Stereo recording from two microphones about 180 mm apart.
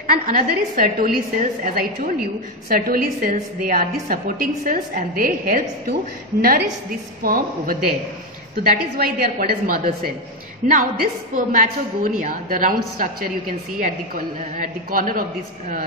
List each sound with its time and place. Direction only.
0.0 s a woman's voice: 50° right (ahead or behind)
7.2 s a woman's voice: 55° right (ahead or behind)